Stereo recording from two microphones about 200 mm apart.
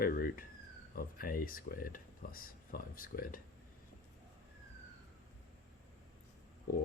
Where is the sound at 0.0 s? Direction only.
45° left (ahead or behind).